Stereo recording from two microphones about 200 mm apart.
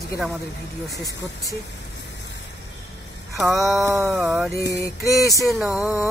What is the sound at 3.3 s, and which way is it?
Music, centre (ahead or behind).